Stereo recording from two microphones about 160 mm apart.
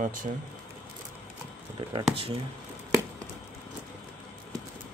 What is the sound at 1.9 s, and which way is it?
Speech, 35° right (ahead or behind).